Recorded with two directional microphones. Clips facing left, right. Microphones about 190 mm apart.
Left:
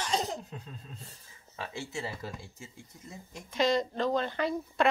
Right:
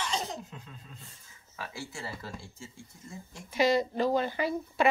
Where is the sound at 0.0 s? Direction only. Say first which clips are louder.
Left 2 dB; 35° left (ahead or behind).